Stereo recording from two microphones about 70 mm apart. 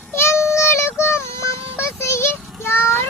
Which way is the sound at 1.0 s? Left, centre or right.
Left.